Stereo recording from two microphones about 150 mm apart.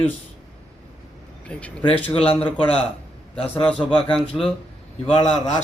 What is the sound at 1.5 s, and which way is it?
Speech, 5° left (ahead or behind).